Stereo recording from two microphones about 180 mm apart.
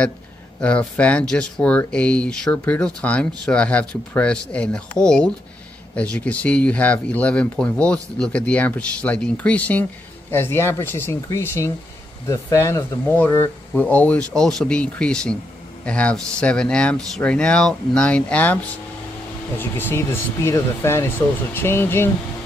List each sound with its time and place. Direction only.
0.6 s speech: 5° left (ahead or behind)